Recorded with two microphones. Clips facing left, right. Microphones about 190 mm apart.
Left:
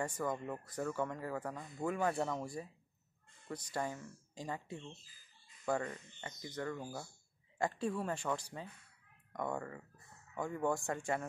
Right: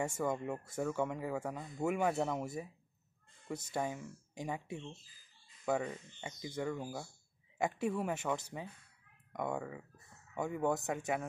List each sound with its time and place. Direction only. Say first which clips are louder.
0.1 s speech: right 3 dB; 25° right (ahead or behind)
0.5 s speech: right 3 dB; 10° right (ahead or behind)
7.5 s speech: right 2 dB; 20° right (ahead or behind)
9.5 s speech: right 2 dB; 10° right (ahead or behind)
10.6 s speech: right 1 dB; 20° right (ahead or behind)